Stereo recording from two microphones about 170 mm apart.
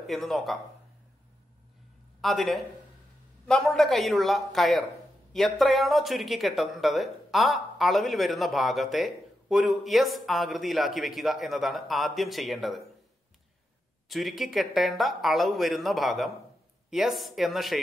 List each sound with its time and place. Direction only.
0.0 s speech: centre (ahead or behind)
2.2 s speech: centre (ahead or behind)
14.0 s speech: centre (ahead or behind)